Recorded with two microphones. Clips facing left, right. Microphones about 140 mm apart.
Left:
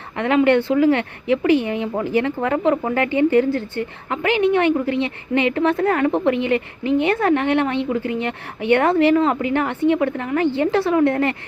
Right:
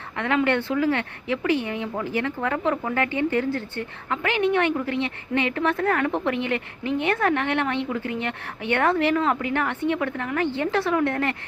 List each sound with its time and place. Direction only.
0.2 s speech: 20° left (ahead or behind)